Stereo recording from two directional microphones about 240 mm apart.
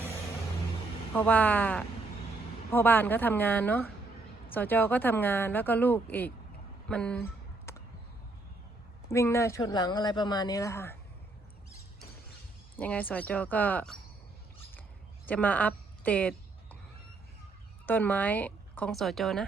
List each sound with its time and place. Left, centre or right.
1.1 s speech: centre
6.8 s fowl: centre
9.0 s speech: centre
12.7 s speech: centre
15.3 s speech: centre
17.8 s speech: centre